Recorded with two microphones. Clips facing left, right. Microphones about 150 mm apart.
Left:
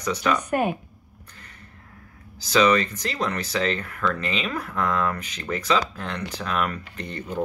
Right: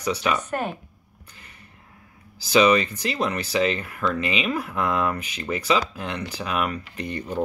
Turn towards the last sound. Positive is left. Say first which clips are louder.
# right 3 dB
turn(degrees=-10)  # may be behind; listen again after turning